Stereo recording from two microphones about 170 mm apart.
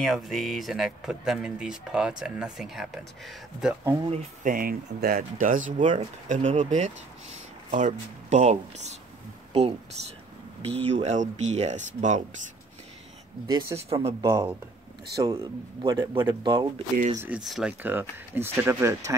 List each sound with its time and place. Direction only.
0.0 s speech: centre (ahead or behind)
3.8 s speech: 15° right (ahead or behind)
4.1 s speech: 45° right (ahead or behind)
10.9 s speech: 40° right (ahead or behind)
13.5 s speech: 20° right (ahead or behind)
13.7 s speech: 35° right (ahead or behind)
15.1 s speech: 20° right (ahead or behind)
17.4 s speech: centre (ahead or behind)